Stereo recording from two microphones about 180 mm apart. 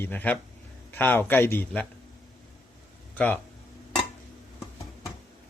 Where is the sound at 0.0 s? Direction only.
10° left (ahead or behind).